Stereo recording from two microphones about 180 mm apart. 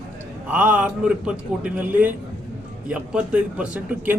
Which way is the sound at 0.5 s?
5° right (ahead or behind).